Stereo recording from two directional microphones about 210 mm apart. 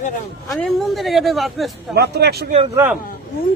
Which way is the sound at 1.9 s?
50° right (ahead or behind).